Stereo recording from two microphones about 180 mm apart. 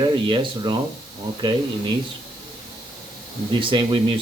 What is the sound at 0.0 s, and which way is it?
Speech, 25° right (ahead or behind).